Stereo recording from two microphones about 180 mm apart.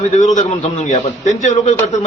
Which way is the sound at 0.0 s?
40° left (ahead or behind).